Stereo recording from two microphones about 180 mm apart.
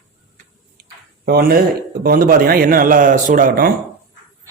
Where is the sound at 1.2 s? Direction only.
55° right (ahead or behind).